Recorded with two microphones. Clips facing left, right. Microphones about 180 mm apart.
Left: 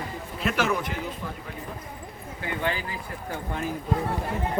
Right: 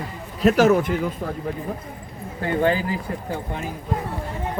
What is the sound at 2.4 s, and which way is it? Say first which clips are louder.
Speech: right 9 dB; 40° right (ahead or behind).